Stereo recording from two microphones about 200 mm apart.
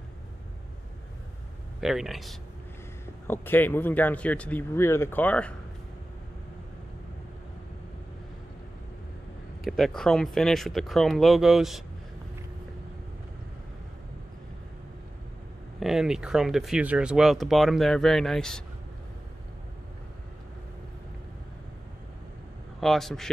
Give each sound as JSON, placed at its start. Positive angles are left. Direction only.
{"t": 1.8, "sound": "speech", "side_deg": 0}
{"t": 3.3, "sound": "speech", "side_deg": 10}
{"t": 9.7, "sound": "speech", "side_deg": 0}
{"t": 15.8, "sound": "speech", "side_deg": 0}
{"t": 22.8, "sound": "a man's voice", "side_deg": 0}